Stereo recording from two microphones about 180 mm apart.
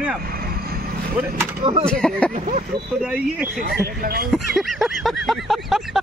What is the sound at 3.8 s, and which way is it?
Speech, 55° right (ahead or behind).